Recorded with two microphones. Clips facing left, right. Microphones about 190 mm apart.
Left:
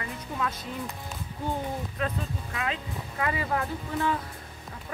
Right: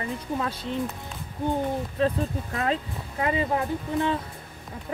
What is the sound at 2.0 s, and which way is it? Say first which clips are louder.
Speech: right 7 dB; 35° right (ahead or behind).